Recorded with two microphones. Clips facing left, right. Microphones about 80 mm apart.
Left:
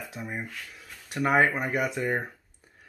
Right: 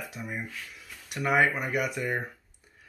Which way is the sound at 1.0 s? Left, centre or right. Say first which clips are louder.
Left 2 dB; left.